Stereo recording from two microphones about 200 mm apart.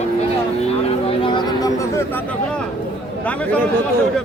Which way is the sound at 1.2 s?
20° left (ahead or behind).